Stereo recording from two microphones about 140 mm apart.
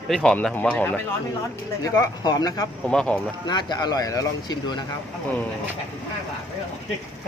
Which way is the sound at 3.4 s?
30° left (ahead or behind).